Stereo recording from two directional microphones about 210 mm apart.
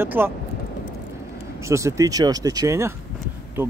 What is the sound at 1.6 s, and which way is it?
Speech, 15° right (ahead or behind).